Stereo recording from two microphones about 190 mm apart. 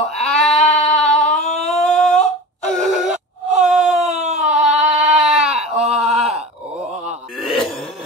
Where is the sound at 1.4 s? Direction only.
35° left (ahead or behind).